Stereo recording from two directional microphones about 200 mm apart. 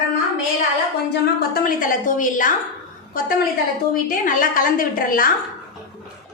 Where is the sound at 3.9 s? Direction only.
45° left (ahead or behind).